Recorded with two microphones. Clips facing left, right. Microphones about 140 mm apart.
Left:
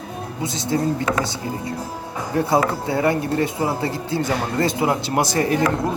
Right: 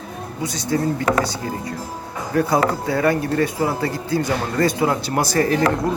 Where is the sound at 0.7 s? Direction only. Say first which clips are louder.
Right 1 dB; 20° left (ahead or behind).